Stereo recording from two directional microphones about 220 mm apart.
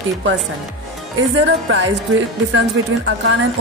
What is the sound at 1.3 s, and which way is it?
Speech, 55° right (ahead or behind).